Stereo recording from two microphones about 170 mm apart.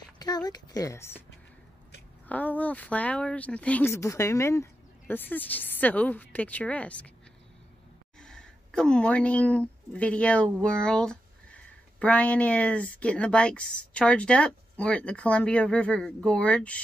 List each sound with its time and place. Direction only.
0.2 s speech: 25° left (ahead or behind)
2.2 s speech: 10° left (ahead or behind)
8.2 s speech: 5° left (ahead or behind)